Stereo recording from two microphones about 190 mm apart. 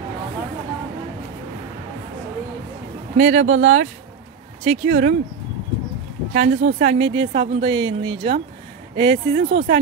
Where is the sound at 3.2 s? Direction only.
90° right.